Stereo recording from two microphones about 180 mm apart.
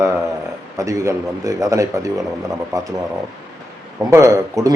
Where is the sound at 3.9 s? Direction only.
15° right (ahead or behind).